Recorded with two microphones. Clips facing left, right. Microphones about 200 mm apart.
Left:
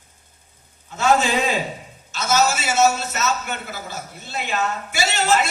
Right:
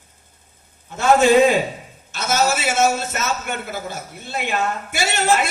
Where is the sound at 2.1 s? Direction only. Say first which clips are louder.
Even; 55° right (ahead or behind).